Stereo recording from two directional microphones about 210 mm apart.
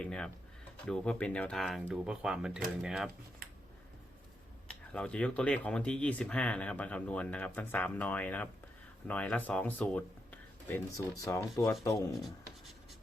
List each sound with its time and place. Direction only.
0.0 s speech: 5° left (ahead or behind)
4.7 s speech: 5° left (ahead or behind)
12.1 s writing: centre (ahead or behind)